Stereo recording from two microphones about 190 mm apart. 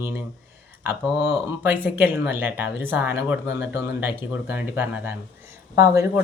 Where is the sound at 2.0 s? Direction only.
10° right (ahead or behind).